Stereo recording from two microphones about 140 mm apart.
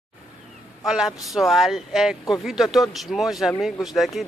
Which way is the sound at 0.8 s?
5° right (ahead or behind).